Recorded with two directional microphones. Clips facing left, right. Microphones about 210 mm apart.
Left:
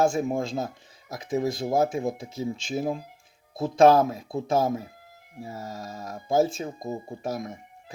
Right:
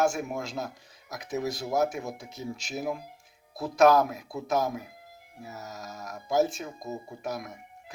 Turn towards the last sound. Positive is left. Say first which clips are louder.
# left 4 dB
turn(degrees=30)  # may be behind; listen again after turning